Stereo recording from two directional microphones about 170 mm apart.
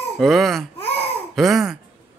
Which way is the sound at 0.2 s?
Centre (ahead or behind).